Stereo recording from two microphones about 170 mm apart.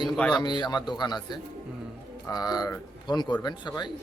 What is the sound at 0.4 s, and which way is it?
Speech, 25° left (ahead or behind).